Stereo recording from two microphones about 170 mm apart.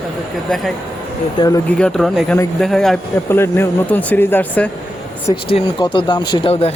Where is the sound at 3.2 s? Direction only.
15° left (ahead or behind).